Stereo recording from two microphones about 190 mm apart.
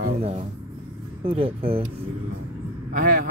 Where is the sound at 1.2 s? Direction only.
30° right (ahead or behind).